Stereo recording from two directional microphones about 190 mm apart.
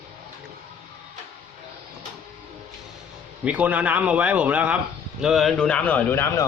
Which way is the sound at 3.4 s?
5° right (ahead or behind).